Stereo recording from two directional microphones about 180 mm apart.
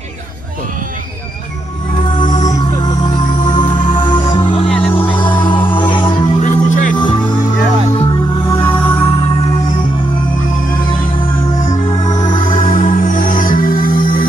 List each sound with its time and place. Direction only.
2.1 s music: 45° left (ahead or behind)
2.5 s music: 25° left (ahead or behind)
3.3 s music: 45° left (ahead or behind)
3.8 s music: 25° left (ahead or behind)
4.7 s music: 10° left (ahead or behind)
5.3 s music: 25° left (ahead or behind)
6.4 s music: 45° left (ahead or behind)
7.0 s music: 25° left (ahead or behind)
12.2 s music: 25° left (ahead or behind)
12.7 s music: 45° left (ahead or behind)